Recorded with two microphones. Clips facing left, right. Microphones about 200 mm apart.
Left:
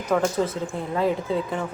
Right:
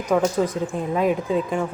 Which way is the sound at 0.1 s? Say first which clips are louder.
Right 2 dB; 15° right (ahead or behind).